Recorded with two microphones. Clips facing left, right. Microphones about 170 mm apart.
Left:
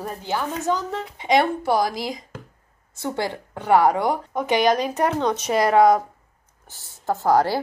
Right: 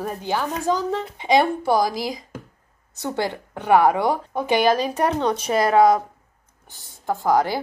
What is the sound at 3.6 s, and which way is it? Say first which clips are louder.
Speech: right 1 dB; 20° right (ahead or behind).